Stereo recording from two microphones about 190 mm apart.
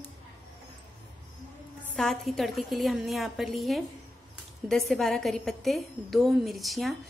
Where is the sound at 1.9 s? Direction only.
Centre (ahead or behind).